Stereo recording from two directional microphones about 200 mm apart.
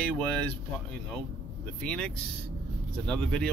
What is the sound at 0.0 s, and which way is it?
Speech, 5° left (ahead or behind).